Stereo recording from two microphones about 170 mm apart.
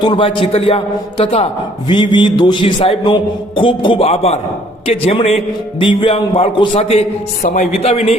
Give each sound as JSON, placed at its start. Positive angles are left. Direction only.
{"t": 0.0, "sound": "a man's voice", "side_deg": 30}